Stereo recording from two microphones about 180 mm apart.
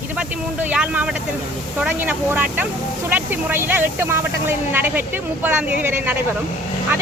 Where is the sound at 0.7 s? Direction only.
10° right (ahead or behind).